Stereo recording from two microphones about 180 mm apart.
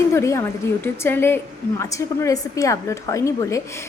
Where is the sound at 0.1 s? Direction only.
15° left (ahead or behind).